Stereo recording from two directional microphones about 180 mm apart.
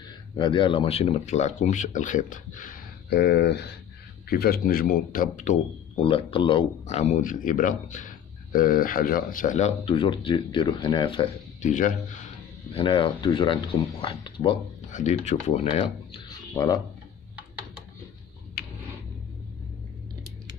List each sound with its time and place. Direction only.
0.4 s speech: 25° left (ahead or behind)
11.6 s speech: 45° left (ahead or behind)
12.7 s speech: 30° left (ahead or behind)
14.9 s speech: 40° left (ahead or behind); by 16.8 s 20° left (ahead or behind)